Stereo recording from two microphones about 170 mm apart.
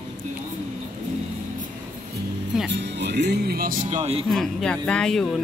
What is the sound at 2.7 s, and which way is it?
Speech, 90° right.